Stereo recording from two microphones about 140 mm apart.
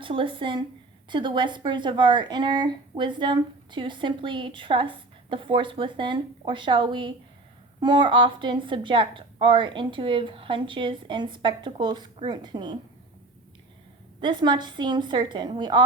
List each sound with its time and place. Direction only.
0.0 s a woman's voice: 40° right (ahead or behind)
14.2 s a woman's voice: 35° right (ahead or behind)